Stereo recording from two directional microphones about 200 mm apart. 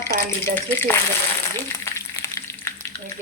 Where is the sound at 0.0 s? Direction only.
15° left (ahead or behind).